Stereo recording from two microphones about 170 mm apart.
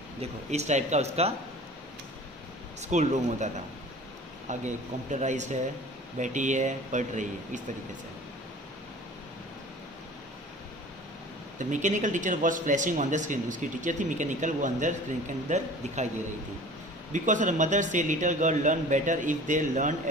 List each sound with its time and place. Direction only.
0.2 s speech: 40° right (ahead or behind)
2.9 s speech: 45° right (ahead or behind)
4.5 s speech: 45° right (ahead or behind)
11.5 s speech: 45° right (ahead or behind)
17.1 s speech: 50° right (ahead or behind)